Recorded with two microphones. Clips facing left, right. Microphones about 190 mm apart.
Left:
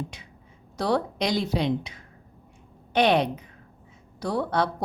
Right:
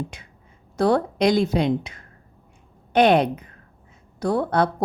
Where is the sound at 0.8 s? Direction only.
50° right (ahead or behind).